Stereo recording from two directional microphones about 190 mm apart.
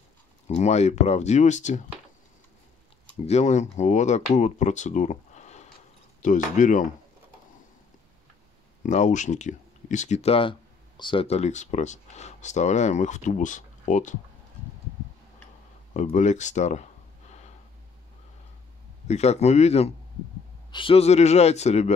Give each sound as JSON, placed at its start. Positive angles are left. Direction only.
{"t": 0.5, "sound": "speech", "side_deg": 35}
{"t": 3.3, "sound": "speech", "side_deg": 35}
{"t": 8.8, "sound": "speech", "side_deg": 40}
{"t": 15.9, "sound": "speech", "side_deg": 40}
{"t": 19.0, "sound": "speech", "side_deg": 35}